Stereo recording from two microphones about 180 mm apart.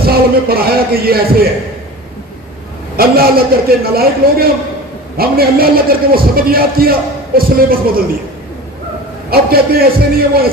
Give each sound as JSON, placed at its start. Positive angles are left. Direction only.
{"t": 0.0, "sound": "a man's voice", "side_deg": -55}
{"t": 3.0, "sound": "a man's voice", "side_deg": -55}
{"t": 9.3, "sound": "a man's voice", "side_deg": -55}